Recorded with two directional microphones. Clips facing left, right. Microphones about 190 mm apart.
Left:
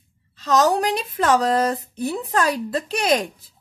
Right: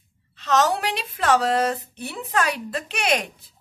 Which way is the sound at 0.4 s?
40° left (ahead or behind).